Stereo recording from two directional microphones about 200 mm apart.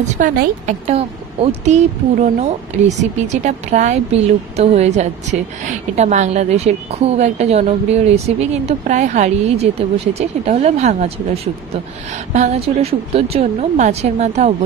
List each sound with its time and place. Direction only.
0.0 s a woman's voice: 40° right (ahead or behind)